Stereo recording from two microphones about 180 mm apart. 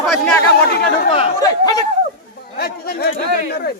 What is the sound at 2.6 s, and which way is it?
Speech, 60° left (ahead or behind).